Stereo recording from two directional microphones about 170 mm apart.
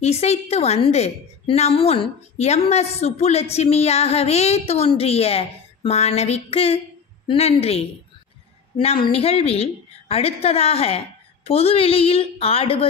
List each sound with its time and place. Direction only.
0.0 s a woman's voice: 40° left (ahead or behind)